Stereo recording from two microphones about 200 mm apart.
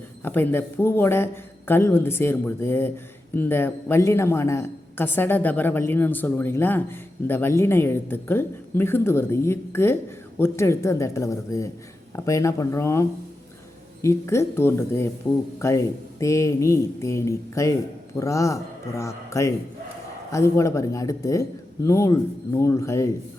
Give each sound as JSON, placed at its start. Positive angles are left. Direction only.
{"t": 0.2, "sound": "a man's voice", "side_deg": 10}